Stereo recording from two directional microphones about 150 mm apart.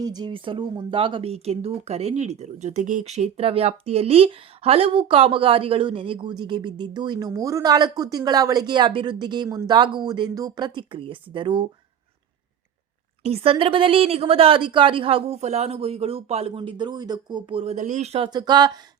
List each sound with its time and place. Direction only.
0.0 s speech: 25° right (ahead or behind)
10.8 s speech: 35° right (ahead or behind)
13.2 s speech: 40° right (ahead or behind)
15.4 s speech: 50° right (ahead or behind)
17.7 s speech: 55° right (ahead or behind)
18.3 s speech: 30° right (ahead or behind)